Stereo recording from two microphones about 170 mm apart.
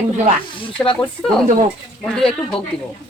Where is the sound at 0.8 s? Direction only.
30° left (ahead or behind).